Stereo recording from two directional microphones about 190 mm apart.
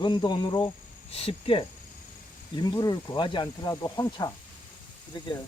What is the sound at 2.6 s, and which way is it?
Speech, 20° left (ahead or behind).